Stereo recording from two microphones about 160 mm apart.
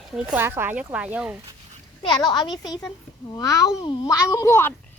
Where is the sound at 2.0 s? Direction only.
25° left (ahead or behind).